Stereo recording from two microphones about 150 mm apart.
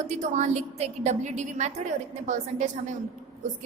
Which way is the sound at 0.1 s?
55° right (ahead or behind).